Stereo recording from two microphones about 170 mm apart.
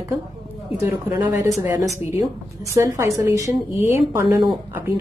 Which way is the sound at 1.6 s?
15° right (ahead or behind).